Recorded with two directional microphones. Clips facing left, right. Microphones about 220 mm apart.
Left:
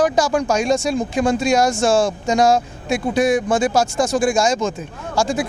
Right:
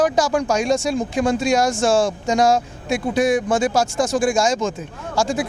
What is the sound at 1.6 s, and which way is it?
Speech, 30° left (ahead or behind).